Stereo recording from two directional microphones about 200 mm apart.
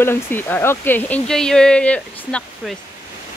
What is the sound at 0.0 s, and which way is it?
Speech, 10° left (ahead or behind).